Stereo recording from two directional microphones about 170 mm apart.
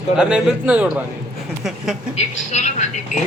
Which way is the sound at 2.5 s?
40° left (ahead or behind).